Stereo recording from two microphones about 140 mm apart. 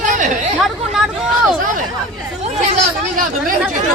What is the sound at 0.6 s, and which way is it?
Speech, 5° right (ahead or behind).